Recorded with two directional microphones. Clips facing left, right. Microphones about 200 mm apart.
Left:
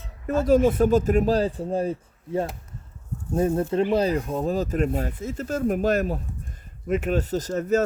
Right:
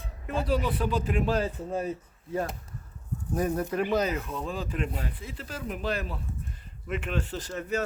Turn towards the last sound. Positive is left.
turn(degrees=40)  # may be behind; listen again after turning